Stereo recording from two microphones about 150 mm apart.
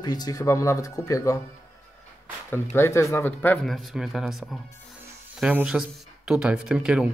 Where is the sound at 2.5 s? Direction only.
15° left (ahead or behind).